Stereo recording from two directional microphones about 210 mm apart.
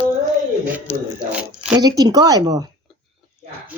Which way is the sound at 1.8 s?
20° right (ahead or behind).